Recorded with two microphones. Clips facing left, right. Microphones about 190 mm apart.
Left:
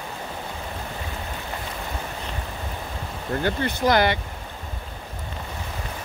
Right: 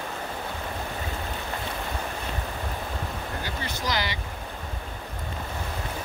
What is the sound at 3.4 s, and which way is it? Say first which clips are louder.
Speech: left 13 dB; 55° left (ahead or behind).